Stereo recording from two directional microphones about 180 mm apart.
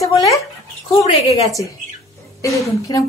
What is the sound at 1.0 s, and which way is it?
Speech, 35° left (ahead or behind).